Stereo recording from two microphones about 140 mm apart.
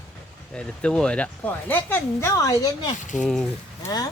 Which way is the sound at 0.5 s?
5° left (ahead or behind).